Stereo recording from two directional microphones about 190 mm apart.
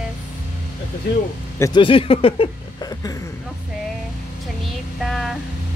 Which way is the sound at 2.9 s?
20° left (ahead or behind).